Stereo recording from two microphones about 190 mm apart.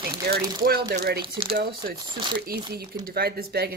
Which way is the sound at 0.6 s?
60° right (ahead or behind).